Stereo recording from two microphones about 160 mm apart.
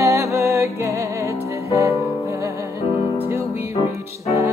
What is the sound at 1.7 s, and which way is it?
Music, 20° right (ahead or behind).